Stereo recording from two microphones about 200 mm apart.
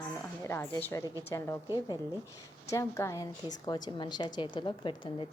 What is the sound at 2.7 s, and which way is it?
A woman's voice, 15° left (ahead or behind).